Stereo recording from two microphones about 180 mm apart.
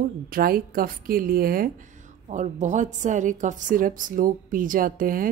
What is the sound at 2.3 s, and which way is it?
A woman's voice, 40° right (ahead or behind).